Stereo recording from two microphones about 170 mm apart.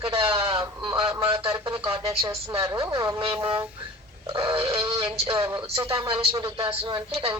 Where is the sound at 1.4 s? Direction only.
25° right (ahead or behind).